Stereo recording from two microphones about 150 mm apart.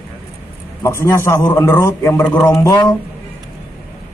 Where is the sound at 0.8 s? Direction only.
15° left (ahead or behind).